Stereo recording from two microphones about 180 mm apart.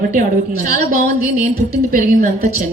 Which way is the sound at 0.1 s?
50° right (ahead or behind).